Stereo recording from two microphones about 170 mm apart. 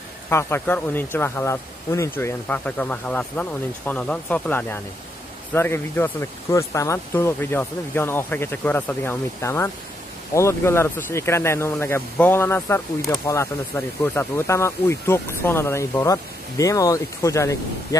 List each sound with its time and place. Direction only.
0.3 s speech: 15° left (ahead or behind)